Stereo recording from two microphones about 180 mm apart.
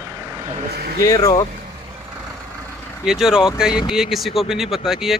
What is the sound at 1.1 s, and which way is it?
Speech, 20° left (ahead or behind).